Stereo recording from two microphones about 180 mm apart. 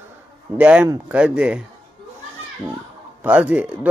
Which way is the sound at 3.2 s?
10° right (ahead or behind).